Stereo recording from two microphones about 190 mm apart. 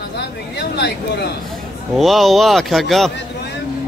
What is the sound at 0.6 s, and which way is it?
Speech, 60° left (ahead or behind).